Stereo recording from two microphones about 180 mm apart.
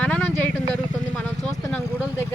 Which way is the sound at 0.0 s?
5° left (ahead or behind).